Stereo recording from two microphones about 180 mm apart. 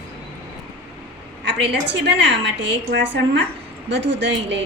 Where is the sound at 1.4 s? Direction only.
75° right (ahead or behind).